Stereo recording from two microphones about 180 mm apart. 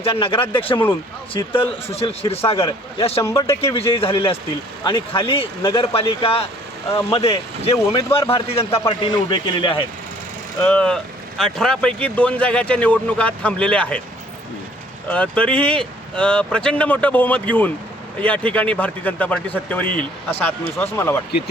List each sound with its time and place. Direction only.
0.0 s speech: 30° left (ahead or behind)
3.2 s speech: 15° left (ahead or behind)
3.8 s speech: 30° left (ahead or behind)
10.6 s speech: 5° left (ahead or behind)
15.1 s speech: 5° left (ahead or behind)